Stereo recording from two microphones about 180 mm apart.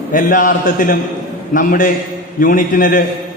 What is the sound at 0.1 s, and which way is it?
A man's voice, 50° left (ahead or behind).